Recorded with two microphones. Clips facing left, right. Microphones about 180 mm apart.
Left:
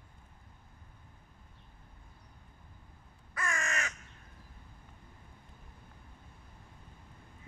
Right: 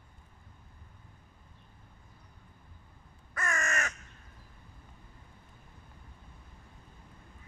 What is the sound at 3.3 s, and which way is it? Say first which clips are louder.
Crow: right 2 dB; 45° right (ahead or behind).